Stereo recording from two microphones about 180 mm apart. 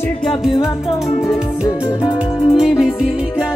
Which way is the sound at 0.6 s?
15° left (ahead or behind).